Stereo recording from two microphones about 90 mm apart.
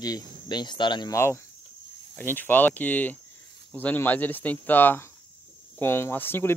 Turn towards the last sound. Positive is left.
turn(degrees=25)  # may be behind; listen again after turning